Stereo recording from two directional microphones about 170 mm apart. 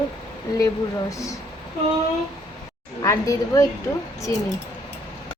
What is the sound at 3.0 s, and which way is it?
Speech, 20° left (ahead or behind).